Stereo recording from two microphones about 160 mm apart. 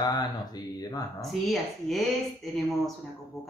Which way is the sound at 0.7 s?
25° left (ahead or behind).